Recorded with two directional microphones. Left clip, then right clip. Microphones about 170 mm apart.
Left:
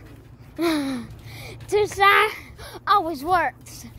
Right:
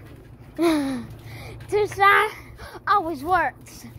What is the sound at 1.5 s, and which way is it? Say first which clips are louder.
Speech: left 1 dB; 40° left (ahead or behind).